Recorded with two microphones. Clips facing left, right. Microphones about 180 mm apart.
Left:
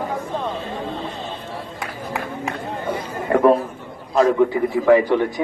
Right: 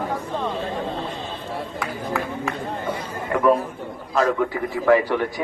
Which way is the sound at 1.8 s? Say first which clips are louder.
Right 1 dB; 20° left (ahead or behind).